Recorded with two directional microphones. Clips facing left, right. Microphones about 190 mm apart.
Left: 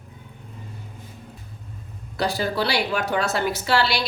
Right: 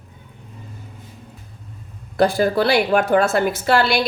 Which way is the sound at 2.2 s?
50° right (ahead or behind).